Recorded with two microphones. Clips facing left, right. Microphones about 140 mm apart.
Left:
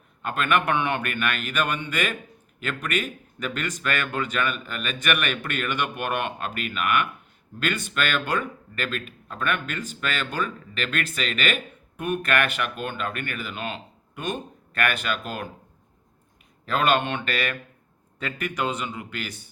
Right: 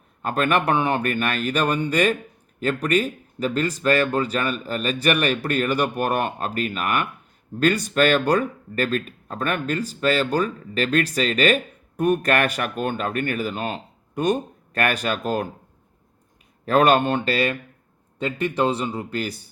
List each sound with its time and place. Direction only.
0.2 s speech: 40° right (ahead or behind)
16.6 s speech: 45° right (ahead or behind)